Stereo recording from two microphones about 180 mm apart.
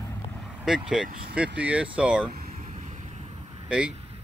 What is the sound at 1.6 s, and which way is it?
Speech, 5° right (ahead or behind).